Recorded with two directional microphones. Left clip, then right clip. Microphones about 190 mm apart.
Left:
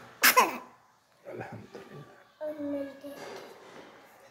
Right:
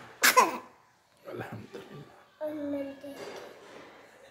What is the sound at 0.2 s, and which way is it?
Cough, 5° right (ahead or behind).